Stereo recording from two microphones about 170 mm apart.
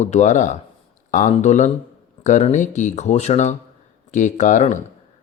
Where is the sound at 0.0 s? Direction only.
45° left (ahead or behind).